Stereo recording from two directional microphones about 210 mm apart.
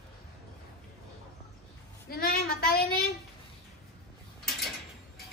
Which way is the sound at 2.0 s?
45° left (ahead or behind).